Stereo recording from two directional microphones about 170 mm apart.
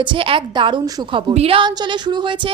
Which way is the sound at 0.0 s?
30° right (ahead or behind).